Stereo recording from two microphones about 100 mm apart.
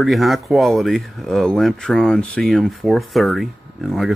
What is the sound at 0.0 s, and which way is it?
Speech, centre (ahead or behind).